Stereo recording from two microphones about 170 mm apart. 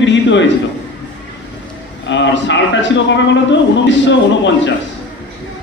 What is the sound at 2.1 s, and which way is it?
A man's voice, 90° left.